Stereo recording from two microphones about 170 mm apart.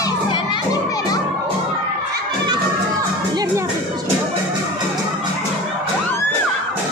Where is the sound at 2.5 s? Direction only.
20° right (ahead or behind).